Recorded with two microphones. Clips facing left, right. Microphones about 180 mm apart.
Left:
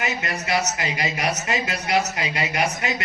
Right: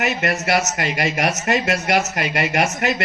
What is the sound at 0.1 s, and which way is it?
Speech, 75° right (ahead or behind).